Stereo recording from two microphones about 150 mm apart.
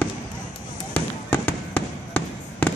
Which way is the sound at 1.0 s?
10° left (ahead or behind).